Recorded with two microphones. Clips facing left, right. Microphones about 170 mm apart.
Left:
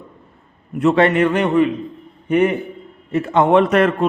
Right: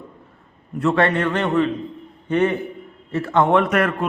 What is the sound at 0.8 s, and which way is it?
A man's voice, 20° left (ahead or behind).